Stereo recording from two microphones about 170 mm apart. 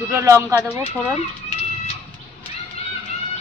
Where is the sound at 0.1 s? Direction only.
15° right (ahead or behind).